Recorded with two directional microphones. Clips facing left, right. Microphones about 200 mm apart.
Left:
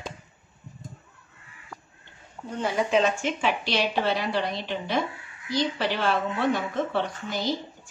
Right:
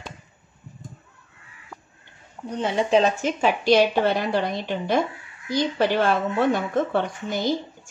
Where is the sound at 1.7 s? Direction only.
15° right (ahead or behind); by 6.1 s 50° right (ahead or behind).